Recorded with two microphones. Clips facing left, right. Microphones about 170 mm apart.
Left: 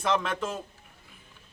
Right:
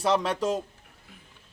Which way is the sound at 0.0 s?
35° right (ahead or behind).